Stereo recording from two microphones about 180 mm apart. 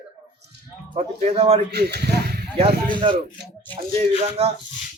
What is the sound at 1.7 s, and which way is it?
Speech, 65° right (ahead or behind).